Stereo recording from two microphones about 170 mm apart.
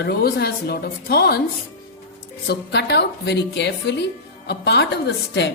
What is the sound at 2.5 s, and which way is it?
A woman's voice, 80° left.